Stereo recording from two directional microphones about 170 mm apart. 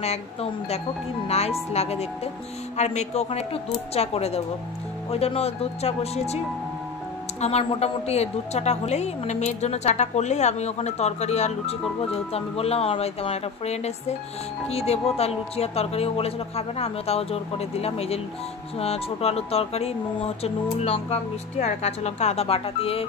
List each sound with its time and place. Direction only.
0.0 s a woman's voice: 40° left (ahead or behind)